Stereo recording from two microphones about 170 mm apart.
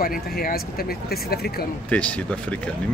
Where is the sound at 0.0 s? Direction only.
60° left (ahead or behind).